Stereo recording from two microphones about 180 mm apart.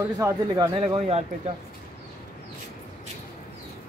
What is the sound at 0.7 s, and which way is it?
Speech, 35° right (ahead or behind).